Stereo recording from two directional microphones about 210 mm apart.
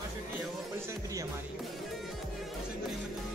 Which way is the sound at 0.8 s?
15° right (ahead or behind).